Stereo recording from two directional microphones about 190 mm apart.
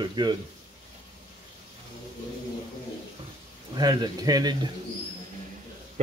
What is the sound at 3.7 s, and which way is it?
Speech, 20° right (ahead or behind).